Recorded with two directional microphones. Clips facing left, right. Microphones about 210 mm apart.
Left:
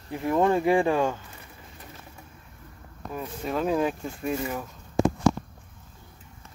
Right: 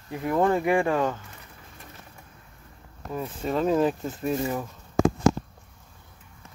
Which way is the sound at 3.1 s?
Centre (ahead or behind).